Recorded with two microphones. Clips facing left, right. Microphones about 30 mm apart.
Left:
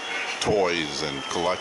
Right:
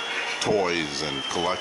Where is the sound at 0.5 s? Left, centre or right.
Centre.